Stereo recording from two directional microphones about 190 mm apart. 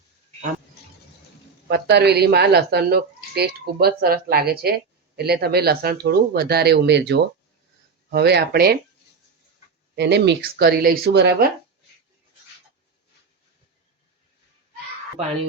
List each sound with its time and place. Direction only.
1.7 s speech: 60° right (ahead or behind)
9.9 s speech: 60° right (ahead or behind)